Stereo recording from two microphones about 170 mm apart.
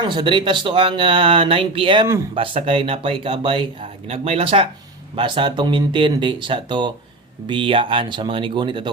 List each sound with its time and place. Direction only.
0.0 s speech: 30° right (ahead or behind)